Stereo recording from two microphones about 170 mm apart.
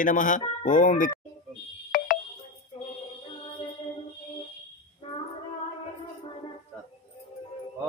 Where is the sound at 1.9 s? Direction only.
55° left (ahead or behind).